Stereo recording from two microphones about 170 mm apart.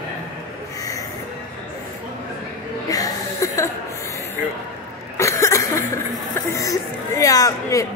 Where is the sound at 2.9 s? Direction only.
20° left (ahead or behind).